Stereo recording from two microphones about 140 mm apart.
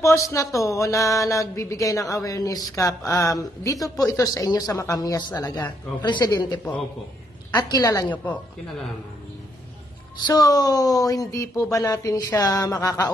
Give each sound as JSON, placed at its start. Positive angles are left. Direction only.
{"t": 0.0, "sound": "speech", "side_deg": 20}
{"t": 10.2, "sound": "speech", "side_deg": 25}